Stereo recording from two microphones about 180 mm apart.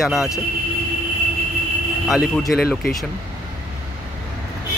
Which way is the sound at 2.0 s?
Centre (ahead or behind).